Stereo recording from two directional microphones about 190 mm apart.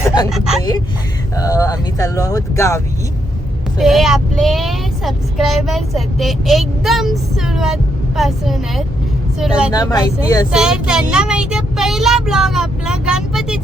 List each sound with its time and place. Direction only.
0.3 s speech: centre (ahead or behind)
1.4 s speech: 15° left (ahead or behind)
3.8 s speech: centre (ahead or behind)
9.7 s speech: 20° left (ahead or behind)
10.5 s speech: 5° right (ahead or behind)